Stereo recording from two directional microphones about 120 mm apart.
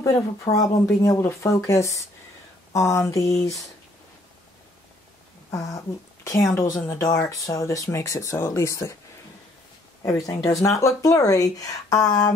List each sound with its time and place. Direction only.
0.0 s speech: 30° left (ahead or behind)
5.5 s speech: 30° left (ahead or behind)
10.0 s speech: 30° left (ahead or behind)